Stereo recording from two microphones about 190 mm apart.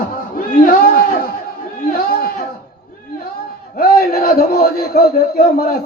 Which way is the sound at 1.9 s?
55° left (ahead or behind).